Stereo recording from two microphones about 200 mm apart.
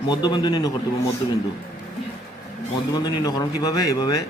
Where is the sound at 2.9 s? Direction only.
20° left (ahead or behind).